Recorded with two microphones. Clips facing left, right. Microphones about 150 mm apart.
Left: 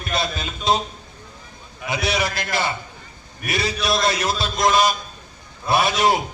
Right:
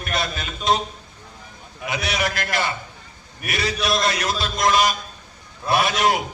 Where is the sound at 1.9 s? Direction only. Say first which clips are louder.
Left 2 dB; 30° left (ahead or behind).